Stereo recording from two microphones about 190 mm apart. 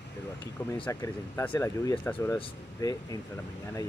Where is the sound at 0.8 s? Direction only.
15° left (ahead or behind).